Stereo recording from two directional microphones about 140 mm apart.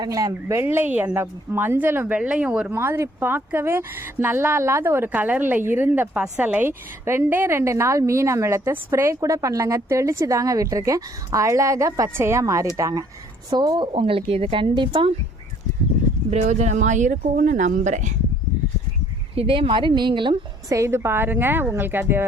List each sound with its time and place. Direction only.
0.0 s speech: 25° right (ahead or behind); by 2.7 s 10° right (ahead or behind)
2.7 s speech: 20° right (ahead or behind); by 15.1 s 35° right (ahead or behind)
16.3 s speech: 55° right (ahead or behind)
19.4 s speech: 40° right (ahead or behind)
20.7 s speech: 20° right (ahead or behind)